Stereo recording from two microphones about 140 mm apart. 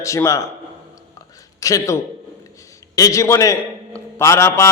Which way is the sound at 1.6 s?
25° left (ahead or behind).